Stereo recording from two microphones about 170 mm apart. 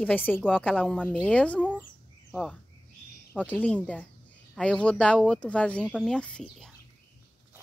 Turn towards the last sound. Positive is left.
turn(degrees=5)  # may be behind; listen again after turning